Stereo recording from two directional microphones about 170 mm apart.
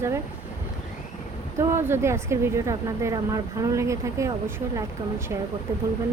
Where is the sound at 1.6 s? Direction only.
15° right (ahead or behind).